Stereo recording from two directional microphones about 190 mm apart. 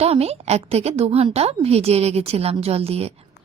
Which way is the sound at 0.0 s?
30° right (ahead or behind).